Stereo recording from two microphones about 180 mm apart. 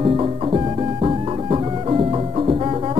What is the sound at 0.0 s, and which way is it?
Music, 30° right (ahead or behind).